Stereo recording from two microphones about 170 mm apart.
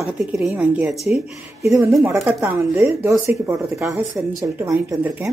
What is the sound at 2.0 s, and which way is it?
A woman's voice, 15° right (ahead or behind).